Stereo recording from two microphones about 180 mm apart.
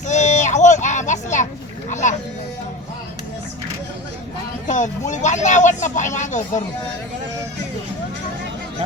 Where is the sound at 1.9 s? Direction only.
45° left (ahead or behind).